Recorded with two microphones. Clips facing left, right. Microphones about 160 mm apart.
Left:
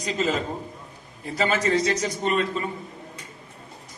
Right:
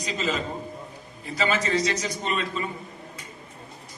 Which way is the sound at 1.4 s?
50° left (ahead or behind).